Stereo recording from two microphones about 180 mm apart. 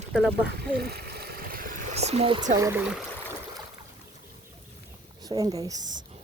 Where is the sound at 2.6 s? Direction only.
15° right (ahead or behind).